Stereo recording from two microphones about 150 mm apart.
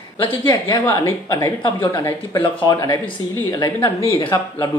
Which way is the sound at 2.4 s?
25° left (ahead or behind).